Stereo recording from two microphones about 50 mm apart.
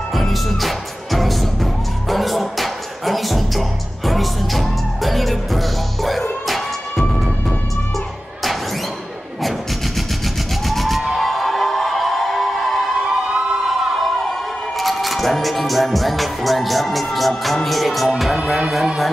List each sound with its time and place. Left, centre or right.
0.1 s music: centre
10.7 s music: centre
13.0 s emergency vehicle: centre
13.6 s a sound: centre
14.8 s music: centre
18.3 s music: centre